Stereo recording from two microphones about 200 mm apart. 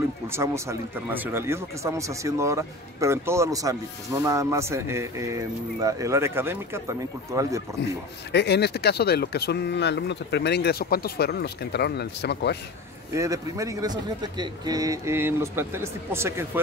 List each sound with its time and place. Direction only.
0.3 s speech: 15° right (ahead or behind)
8.3 s speech: 55° left (ahead or behind)
13.1 s speech: 15° right (ahead or behind)